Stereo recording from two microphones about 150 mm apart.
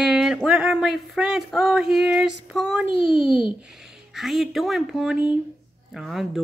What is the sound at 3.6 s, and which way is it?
Speech, 5° right (ahead or behind).